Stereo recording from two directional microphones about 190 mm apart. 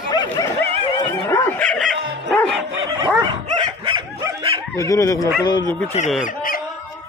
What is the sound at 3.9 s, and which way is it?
Dog, 25° right (ahead or behind).